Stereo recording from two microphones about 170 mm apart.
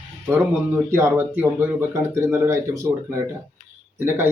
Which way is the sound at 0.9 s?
15° right (ahead or behind).